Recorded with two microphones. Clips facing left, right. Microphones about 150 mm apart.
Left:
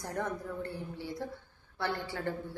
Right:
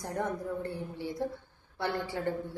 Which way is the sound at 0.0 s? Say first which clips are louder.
Right 2 dB; 20° right (ahead or behind).